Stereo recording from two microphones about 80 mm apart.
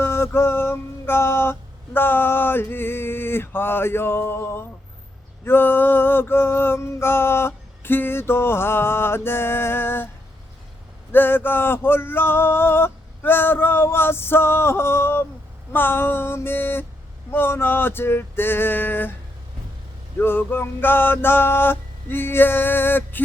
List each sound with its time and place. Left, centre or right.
0.0 s music: left
11.1 s music: left
20.1 s music: left